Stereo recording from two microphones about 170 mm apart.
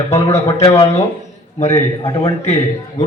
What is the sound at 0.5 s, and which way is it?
A man's voice, 35° left (ahead or behind).